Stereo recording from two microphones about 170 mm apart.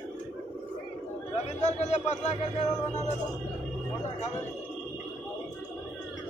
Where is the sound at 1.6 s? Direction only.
40° left (ahead or behind).